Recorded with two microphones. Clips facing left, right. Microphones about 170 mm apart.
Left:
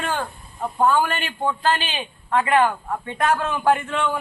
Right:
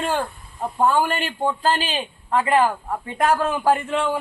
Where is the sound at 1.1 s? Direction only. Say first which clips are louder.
Right 2 dB; 35° right (ahead or behind).